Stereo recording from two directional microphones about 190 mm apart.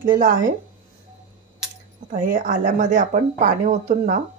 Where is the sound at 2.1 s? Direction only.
45° right (ahead or behind).